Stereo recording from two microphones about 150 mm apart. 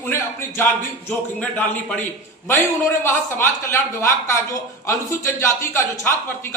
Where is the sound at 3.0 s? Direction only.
15° left (ahead or behind).